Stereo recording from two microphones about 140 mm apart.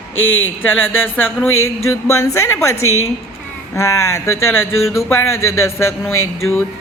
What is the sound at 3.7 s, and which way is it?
A woman's voice, 20° left (ahead or behind).